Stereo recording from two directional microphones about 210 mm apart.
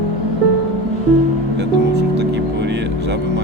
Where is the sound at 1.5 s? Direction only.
55° right (ahead or behind).